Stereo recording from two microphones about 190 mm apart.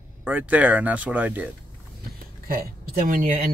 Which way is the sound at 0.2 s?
10° right (ahead or behind).